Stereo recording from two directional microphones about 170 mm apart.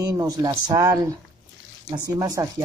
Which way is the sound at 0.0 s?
20° right (ahead or behind).